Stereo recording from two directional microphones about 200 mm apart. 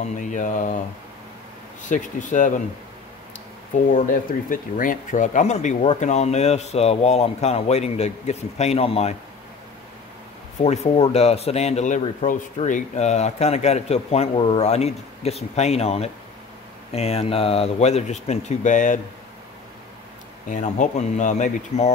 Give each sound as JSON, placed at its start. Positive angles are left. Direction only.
{"t": 0.0, "sound": "a man's voice", "side_deg": 40}
{"t": 1.8, "sound": "a man's voice", "side_deg": 40}
{"t": 3.9, "sound": "a man's voice", "side_deg": 40}
{"t": 10.6, "sound": "a man's voice", "side_deg": 30}
{"t": 20.4, "sound": "a man's voice", "side_deg": 40}